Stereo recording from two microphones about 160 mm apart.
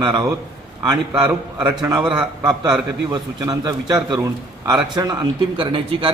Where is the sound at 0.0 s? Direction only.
25° right (ahead or behind).